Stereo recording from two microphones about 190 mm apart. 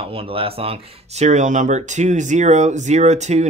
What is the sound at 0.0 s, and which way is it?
Speech, 30° right (ahead or behind).